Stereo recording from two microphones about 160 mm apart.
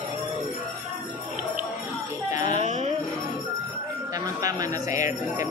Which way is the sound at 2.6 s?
45° right (ahead or behind).